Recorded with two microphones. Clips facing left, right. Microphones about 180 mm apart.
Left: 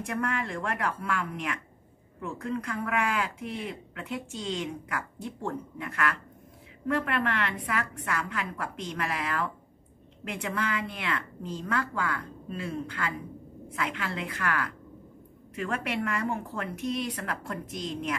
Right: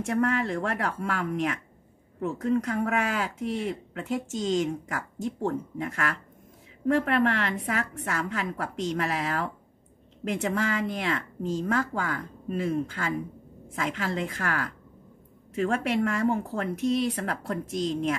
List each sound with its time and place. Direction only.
0.0 s speech: 45° right (ahead or behind)